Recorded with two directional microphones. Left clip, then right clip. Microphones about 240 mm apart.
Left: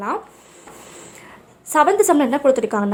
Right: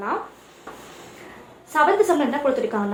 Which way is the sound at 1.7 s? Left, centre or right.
Left.